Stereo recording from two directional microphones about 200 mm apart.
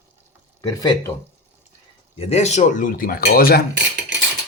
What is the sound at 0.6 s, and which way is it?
Speech, 20° left (ahead or behind).